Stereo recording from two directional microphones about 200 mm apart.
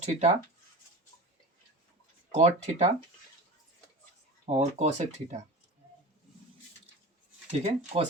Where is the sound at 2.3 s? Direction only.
35° right (ahead or behind).